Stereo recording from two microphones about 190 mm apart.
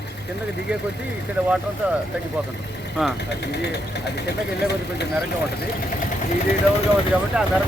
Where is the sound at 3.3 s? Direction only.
65° left (ahead or behind).